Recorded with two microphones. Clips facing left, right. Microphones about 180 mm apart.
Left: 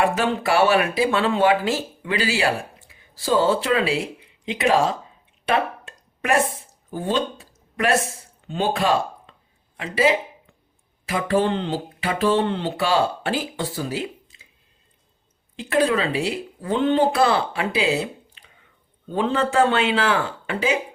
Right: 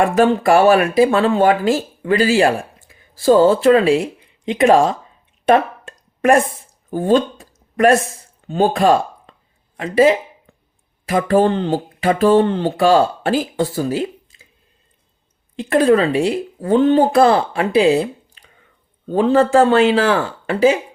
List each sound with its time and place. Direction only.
0.0 s speech: 50° right (ahead or behind)
5.5 s a sound: 45° right (ahead or behind)
6.9 s speech: 50° right (ahead or behind)
15.5 s a man's voice: 50° right (ahead or behind)